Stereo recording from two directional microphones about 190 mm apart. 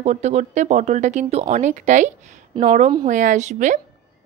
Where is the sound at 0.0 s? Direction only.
35° right (ahead or behind).